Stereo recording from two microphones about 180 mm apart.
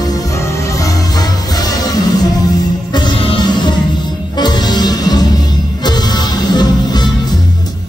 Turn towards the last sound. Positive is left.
turn(degrees=25)  # may be behind; listen again after turning